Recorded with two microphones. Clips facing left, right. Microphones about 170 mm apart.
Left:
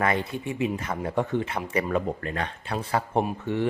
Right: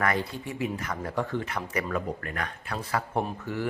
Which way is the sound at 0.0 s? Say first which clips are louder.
Left 2 dB; 20° left (ahead or behind).